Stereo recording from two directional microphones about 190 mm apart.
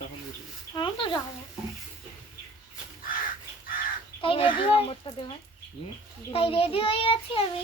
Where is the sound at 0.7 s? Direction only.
25° left (ahead or behind).